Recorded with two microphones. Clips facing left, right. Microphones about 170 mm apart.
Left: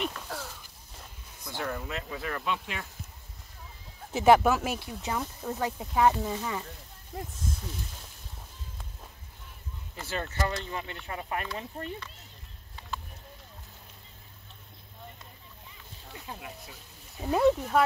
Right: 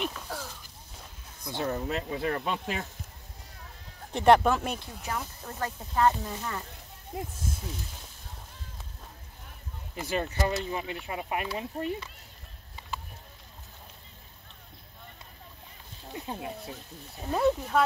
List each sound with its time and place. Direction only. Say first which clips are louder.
0.0 s a sound: even; centre (ahead or behind)
1.4 s speech: right 4 dB; 20° right (ahead or behind); by 2.9 s 40° right (ahead or behind)
4.1 s speech: even; 5° left (ahead or behind)
5.1 s speech: left 3 dB; 20° left (ahead or behind)
7.1 s speech: right 2 dB; 20° right (ahead or behind)
9.9 s speech: right 3 dB; 15° right (ahead or behind)
16.1 s speech: right 6 dB; 25° right (ahead or behind)
17.3 s speech: left 2 dB; 5° left (ahead or behind)